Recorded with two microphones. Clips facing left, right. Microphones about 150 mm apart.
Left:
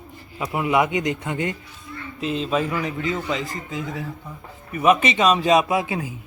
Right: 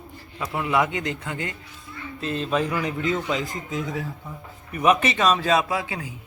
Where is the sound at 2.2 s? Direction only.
10° left (ahead or behind).